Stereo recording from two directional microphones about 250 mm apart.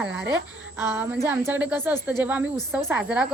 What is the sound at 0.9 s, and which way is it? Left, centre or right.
Speech, centre.